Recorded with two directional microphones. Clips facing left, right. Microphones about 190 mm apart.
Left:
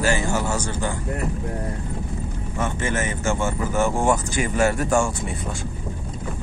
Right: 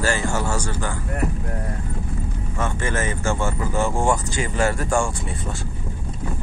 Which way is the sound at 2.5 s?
15° left (ahead or behind).